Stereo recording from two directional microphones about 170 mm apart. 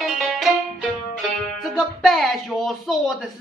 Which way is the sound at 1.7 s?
Centre (ahead or behind).